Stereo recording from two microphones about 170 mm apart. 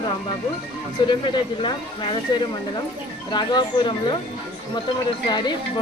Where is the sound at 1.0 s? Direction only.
25° left (ahead or behind).